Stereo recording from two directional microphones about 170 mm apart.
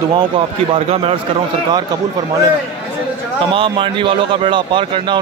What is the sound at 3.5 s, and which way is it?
A man's voice, 30° right (ahead or behind).